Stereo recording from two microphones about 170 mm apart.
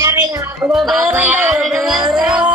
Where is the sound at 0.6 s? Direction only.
5° right (ahead or behind).